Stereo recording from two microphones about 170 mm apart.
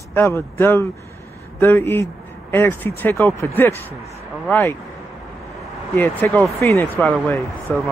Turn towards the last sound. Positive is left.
turn(degrees=5)  # may be behind; listen again after turning